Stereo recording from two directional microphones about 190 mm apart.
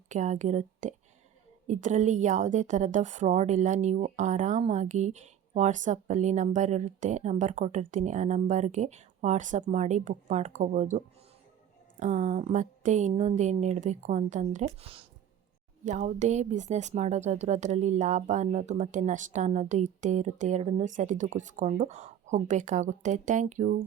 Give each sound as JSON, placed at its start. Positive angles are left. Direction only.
{"t": 0.1, "sound": "a woman's voice", "side_deg": -40}